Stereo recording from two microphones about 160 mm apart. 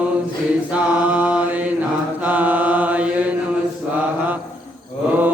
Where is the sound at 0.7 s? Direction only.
10° right (ahead or behind).